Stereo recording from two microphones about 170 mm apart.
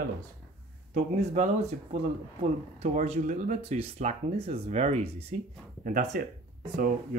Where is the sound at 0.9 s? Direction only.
40° right (ahead or behind).